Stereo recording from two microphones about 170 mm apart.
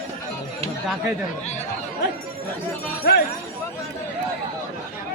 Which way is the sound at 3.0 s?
70° left (ahead or behind).